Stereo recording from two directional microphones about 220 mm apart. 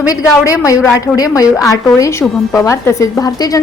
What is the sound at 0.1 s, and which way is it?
A woman's voice, 15° left (ahead or behind).